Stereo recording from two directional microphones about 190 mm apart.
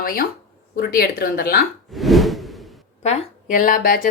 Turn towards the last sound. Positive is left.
turn(degrees=50)  # may be behind; listen again after turning